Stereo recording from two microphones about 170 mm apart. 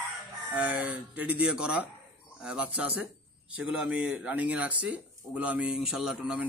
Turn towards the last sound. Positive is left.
turn(degrees=-5)  # may be behind; listen again after turning